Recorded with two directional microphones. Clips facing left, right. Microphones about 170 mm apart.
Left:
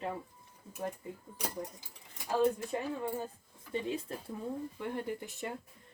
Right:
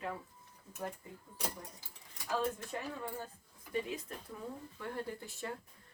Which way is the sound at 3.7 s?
30° left (ahead or behind).